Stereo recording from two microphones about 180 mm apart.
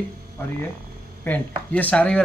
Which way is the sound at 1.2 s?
10° left (ahead or behind).